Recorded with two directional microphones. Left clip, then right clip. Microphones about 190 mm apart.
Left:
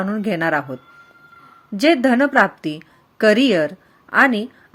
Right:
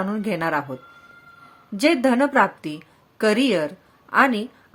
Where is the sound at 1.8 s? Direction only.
15° left (ahead or behind).